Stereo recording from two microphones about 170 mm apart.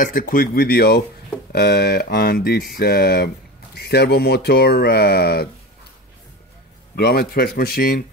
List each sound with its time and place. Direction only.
0.0 s speech: 55° left (ahead or behind)
7.0 s speech: 70° left (ahead or behind)